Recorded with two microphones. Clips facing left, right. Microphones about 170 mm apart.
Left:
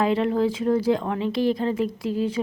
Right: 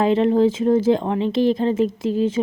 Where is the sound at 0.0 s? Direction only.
25° right (ahead or behind).